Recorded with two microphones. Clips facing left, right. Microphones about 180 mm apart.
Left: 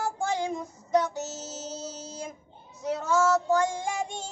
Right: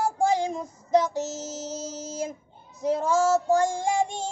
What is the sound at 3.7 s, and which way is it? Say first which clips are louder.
Child singing: right 6 dB; 35° right (ahead or behind).